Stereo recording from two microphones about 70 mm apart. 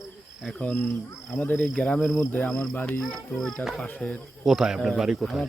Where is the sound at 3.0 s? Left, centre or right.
Centre.